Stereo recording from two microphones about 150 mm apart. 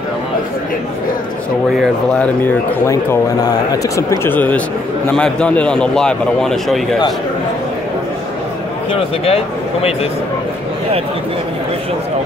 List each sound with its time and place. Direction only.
2.9 s a man's voice: 20° left (ahead or behind); by 6.8 s 5° left (ahead or behind)
9.2 s speech: 40° left (ahead or behind)